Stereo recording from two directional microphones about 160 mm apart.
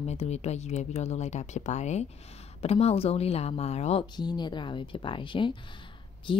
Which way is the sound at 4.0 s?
25° left (ahead or behind).